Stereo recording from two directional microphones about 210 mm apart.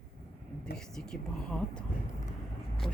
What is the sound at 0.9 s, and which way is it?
Speech, 5° left (ahead or behind).